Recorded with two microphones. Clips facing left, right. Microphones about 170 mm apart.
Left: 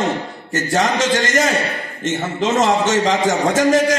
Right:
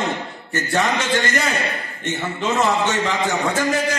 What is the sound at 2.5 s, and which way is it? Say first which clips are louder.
A man's voice: left 3 dB; 45° left (ahead or behind).